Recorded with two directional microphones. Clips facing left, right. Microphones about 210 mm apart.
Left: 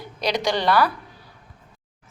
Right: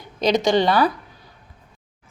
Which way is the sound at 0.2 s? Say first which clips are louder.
Right 6 dB; 20° right (ahead or behind).